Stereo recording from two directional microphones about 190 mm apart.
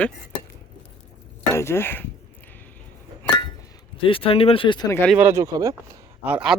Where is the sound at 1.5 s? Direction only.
15° left (ahead or behind).